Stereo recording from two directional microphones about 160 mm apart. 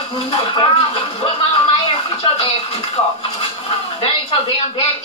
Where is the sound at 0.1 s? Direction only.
35° left (ahead or behind).